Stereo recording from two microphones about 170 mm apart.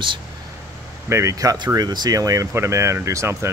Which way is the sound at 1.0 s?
15° right (ahead or behind).